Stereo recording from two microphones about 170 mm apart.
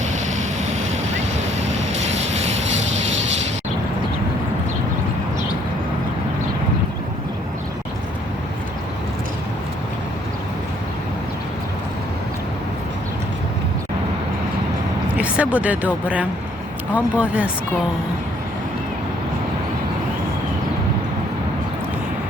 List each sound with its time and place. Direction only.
0.1 s vehicle: 45° right (ahead or behind)
15.1 s a sound: 10° right (ahead or behind)
16.9 s speech: 10° right (ahead or behind)